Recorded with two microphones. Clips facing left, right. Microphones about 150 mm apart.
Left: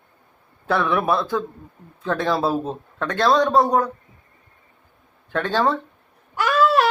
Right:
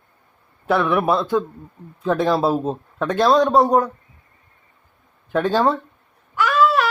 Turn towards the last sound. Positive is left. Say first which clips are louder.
# even
turn(degrees=35)  # may be behind; listen again after turning